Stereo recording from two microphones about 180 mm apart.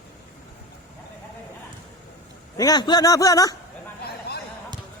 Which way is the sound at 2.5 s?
20° left (ahead or behind).